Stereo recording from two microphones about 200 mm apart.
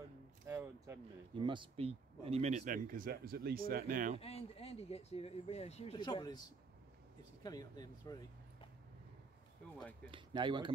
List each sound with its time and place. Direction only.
0.5 s a sound: 15° right (ahead or behind)
1.3 s speech: 25° right (ahead or behind); by 4.2 s 40° right (ahead or behind)
4.2 s speech: 30° left (ahead or behind)
7.4 s speech: 20° left (ahead or behind)
10.1 s speech: 25° right (ahead or behind)